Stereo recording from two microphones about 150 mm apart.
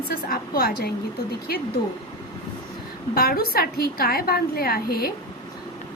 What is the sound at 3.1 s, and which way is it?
A woman's voice, 90° left.